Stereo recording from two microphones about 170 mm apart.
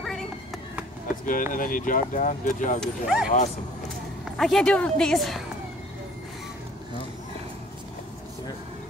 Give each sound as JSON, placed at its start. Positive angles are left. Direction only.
{"t": 1.2, "sound": "speech", "side_deg": 50}
{"t": 2.8, "sound": "a woman's voice", "side_deg": -5}
{"t": 4.4, "sound": "a woman's voice", "side_deg": 0}